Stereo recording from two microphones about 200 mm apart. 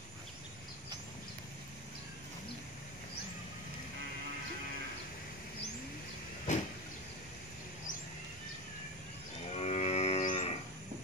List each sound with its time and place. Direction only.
6.5 s vehicle: 35° left (ahead or behind)
9.6 s livestock: 35° left (ahead or behind)